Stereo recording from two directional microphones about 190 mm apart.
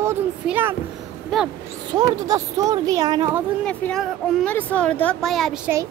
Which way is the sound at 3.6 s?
5° left (ahead or behind).